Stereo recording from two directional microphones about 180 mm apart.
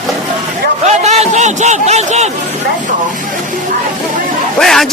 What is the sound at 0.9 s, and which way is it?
A man's voice, 35° right (ahead or behind).